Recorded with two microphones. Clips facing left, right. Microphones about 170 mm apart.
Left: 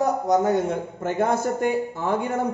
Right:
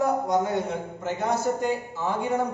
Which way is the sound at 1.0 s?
50° left (ahead or behind).